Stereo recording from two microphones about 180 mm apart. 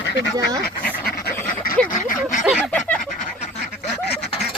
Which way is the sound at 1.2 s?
10° left (ahead or behind).